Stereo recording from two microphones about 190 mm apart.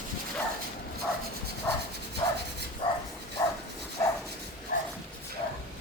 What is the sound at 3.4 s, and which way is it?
Dog, 15° left (ahead or behind).